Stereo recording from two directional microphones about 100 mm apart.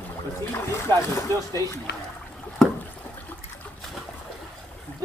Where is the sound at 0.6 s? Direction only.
30° left (ahead or behind).